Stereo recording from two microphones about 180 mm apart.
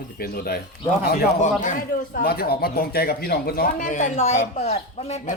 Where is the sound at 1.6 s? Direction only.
50° left (ahead or behind).